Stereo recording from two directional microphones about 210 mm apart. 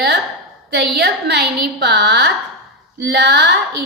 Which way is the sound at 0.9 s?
50° right (ahead or behind).